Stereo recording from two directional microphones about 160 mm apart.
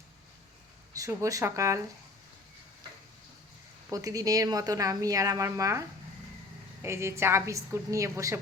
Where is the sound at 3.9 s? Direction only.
20° right (ahead or behind).